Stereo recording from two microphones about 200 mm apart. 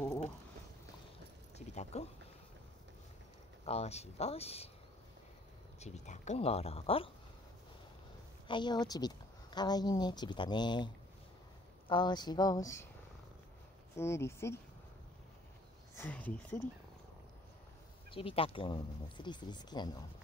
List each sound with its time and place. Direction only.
1.7 s a sound: 35° left (ahead or behind)
3.6 s speech: 30° left (ahead or behind)
5.8 s speech: 35° left (ahead or behind)
8.5 s speech: 20° left (ahead or behind)
11.9 s speech: 20° left (ahead or behind)
13.9 s speech: 15° left (ahead or behind)
16.0 s speech: 10° left (ahead or behind)
18.1 s speech: 25° left (ahead or behind)